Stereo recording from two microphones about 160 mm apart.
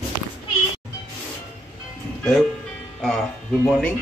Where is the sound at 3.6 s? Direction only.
5° left (ahead or behind).